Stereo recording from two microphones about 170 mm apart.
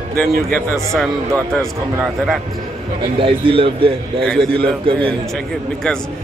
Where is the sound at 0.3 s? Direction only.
60° right (ahead or behind).